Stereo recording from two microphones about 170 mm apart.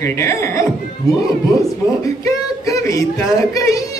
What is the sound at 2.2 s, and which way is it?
Speech, 20° left (ahead or behind).